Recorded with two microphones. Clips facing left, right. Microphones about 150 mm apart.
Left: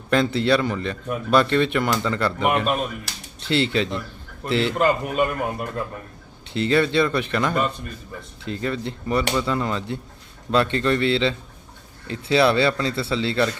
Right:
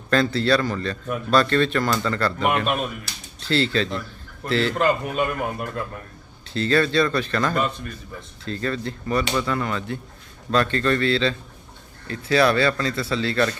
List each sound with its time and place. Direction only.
0.1 s speech: 20° left (ahead or behind)
4.7 s a man's voice: 5° left (ahead or behind)
6.5 s speech: 20° left (ahead or behind)